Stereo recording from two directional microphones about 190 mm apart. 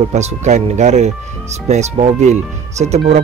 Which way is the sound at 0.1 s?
35° right (ahead or behind).